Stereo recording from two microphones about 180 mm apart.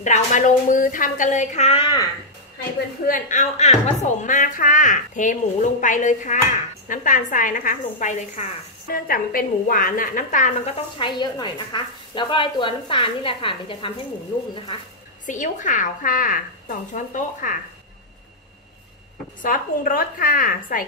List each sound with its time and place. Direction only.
0.0 s a woman's voice: 40° left (ahead or behind)
3.1 s a woman's voice: 45° left (ahead or behind)
11.0 s speech: 25° left (ahead or behind)
15.2 s a woman's voice: 45° left (ahead or behind)
19.4 s a woman's voice: 50° left (ahead or behind)